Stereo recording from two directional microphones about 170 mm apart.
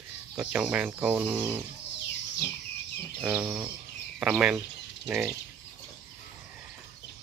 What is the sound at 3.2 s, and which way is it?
Speech, 5° right (ahead or behind).